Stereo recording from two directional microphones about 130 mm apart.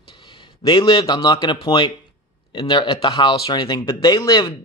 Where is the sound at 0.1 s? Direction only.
40° left (ahead or behind).